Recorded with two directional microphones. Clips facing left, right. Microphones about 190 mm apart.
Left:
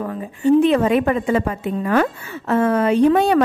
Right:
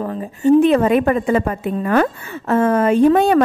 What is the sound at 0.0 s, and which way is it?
A woman's voice, 35° right (ahead or behind).